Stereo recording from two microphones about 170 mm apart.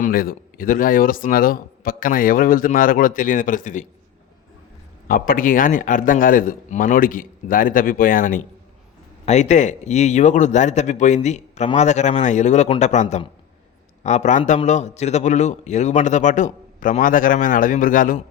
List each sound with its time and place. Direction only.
0.0 s speech: 55° left (ahead or behind)
5.0 s a man's voice: 55° left (ahead or behind)